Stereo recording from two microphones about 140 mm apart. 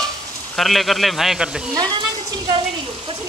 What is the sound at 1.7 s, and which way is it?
Speech, 30° right (ahead or behind).